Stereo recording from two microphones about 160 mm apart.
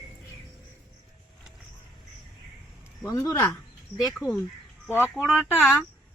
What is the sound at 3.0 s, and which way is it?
Speech, 20° left (ahead or behind).